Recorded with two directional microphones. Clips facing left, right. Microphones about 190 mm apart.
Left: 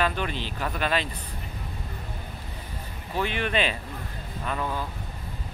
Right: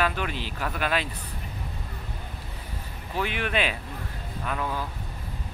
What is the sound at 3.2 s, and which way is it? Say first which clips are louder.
Speech: left 1 dB; 10° right (ahead or behind).